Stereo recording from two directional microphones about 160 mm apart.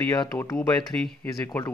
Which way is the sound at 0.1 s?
20° left (ahead or behind).